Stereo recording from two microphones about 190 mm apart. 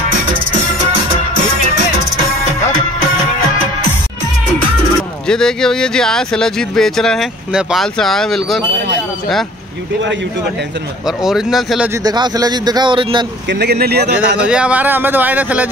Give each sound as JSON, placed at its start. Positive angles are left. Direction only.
{"t": 5.3, "sound": "speech", "side_deg": 5}
{"t": 11.1, "sound": "speech", "side_deg": 0}
{"t": 12.0, "sound": "speech", "side_deg": -20}
{"t": 13.5, "sound": "speech", "side_deg": -60}
{"t": 14.4, "sound": "speech", "side_deg": -5}